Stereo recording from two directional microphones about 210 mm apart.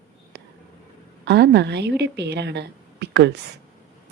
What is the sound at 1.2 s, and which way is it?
A woman's voice, 55° right (ahead or behind).